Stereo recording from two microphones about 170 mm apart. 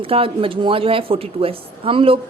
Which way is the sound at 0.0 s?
30° right (ahead or behind).